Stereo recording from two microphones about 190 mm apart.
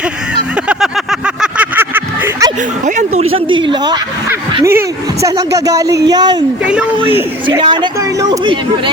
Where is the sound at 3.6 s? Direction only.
25° right (ahead or behind).